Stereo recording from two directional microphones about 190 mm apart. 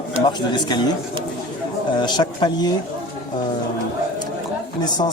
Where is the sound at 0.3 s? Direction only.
25° left (ahead or behind).